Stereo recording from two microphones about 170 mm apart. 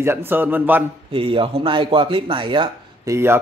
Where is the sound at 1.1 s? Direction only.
30° right (ahead or behind).